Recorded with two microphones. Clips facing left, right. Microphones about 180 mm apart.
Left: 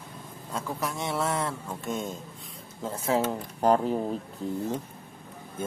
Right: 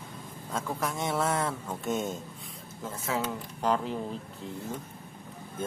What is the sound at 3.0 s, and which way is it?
Speech, 30° left (ahead or behind).